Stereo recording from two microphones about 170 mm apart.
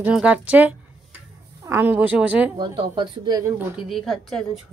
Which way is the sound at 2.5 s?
30° right (ahead or behind).